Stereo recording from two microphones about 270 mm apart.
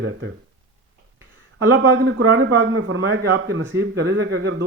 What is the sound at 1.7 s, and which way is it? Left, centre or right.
A man's voice, right.